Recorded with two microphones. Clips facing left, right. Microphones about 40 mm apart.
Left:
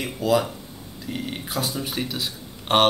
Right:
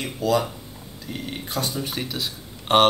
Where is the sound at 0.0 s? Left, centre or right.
Centre.